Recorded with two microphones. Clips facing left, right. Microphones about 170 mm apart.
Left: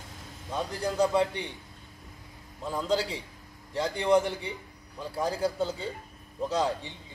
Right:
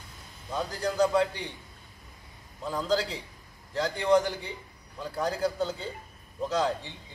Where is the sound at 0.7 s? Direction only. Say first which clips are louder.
Right 1 dB; 25° left (ahead or behind).